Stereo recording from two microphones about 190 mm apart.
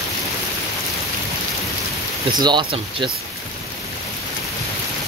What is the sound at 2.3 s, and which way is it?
Speech, 25° right (ahead or behind).